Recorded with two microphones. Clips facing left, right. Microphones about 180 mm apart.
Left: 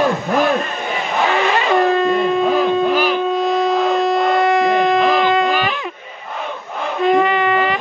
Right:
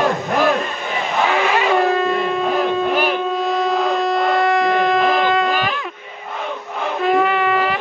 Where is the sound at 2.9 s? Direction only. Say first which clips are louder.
Left 2 dB; 55° right (ahead or behind).